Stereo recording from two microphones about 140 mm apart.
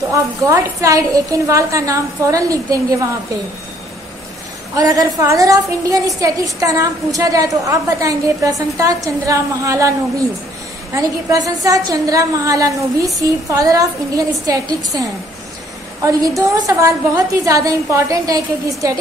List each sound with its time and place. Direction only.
0.1 s a woman's voice: 25° right (ahead or behind)
4.7 s a woman's voice: 25° right (ahead or behind)